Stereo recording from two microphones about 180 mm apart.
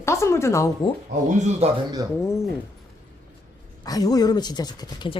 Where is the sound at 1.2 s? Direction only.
40° right (ahead or behind).